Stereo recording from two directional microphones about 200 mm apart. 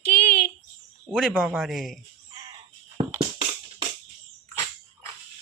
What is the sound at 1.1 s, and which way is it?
Speech, centre (ahead or behind).